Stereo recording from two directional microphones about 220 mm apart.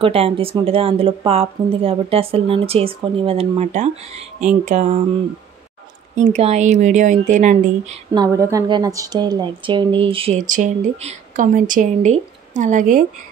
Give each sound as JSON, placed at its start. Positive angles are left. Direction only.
{"t": 0.0, "sound": "a woman's voice", "side_deg": -25}
{"t": 6.1, "sound": "a woman's voice", "side_deg": -30}
{"t": 8.2, "sound": "speech", "side_deg": -15}